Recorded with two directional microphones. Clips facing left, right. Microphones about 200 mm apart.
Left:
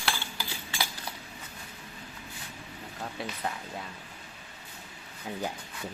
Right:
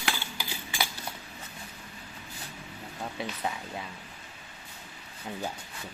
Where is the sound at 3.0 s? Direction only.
Centre (ahead or behind).